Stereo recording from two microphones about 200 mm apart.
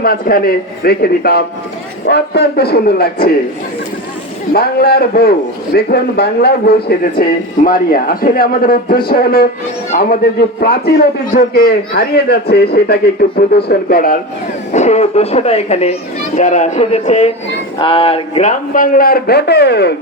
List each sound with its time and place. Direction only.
0.0 s a man's voice: 50° left (ahead or behind)
4.5 s a man's voice: 50° left (ahead or behind)
14.7 s a man's voice: 35° left (ahead or behind); by 20.0 s 55° left (ahead or behind)